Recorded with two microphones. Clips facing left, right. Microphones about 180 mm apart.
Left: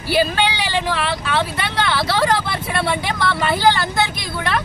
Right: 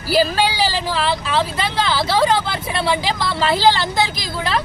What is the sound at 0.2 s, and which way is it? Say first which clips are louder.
Speech: right 2 dB; 35° right (ahead or behind).